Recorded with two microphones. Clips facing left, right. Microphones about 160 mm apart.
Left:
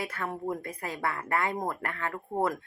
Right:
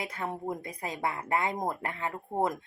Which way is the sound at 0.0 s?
20° right (ahead or behind).